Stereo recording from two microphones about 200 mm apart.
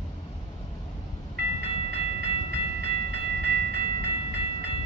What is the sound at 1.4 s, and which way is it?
Train, 55° right (ahead or behind).